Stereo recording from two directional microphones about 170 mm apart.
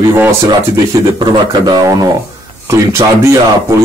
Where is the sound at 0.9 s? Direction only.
25° right (ahead or behind).